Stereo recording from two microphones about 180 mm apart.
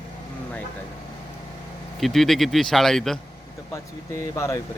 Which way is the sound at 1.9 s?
Centre (ahead or behind).